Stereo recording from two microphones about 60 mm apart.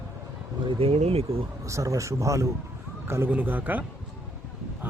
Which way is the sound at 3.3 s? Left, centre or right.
Right.